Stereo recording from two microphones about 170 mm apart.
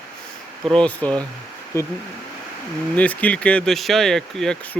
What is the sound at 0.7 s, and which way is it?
Speech, 5° left (ahead or behind).